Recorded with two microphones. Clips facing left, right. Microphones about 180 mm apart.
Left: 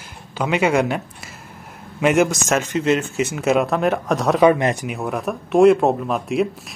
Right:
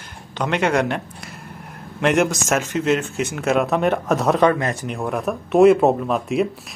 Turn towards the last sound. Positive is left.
turn(degrees=0)  # may be behind; listen again after turning